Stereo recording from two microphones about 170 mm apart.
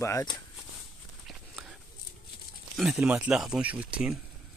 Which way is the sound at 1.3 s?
Centre (ahead or behind).